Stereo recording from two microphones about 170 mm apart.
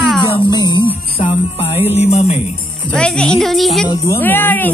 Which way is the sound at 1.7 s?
10° right (ahead or behind).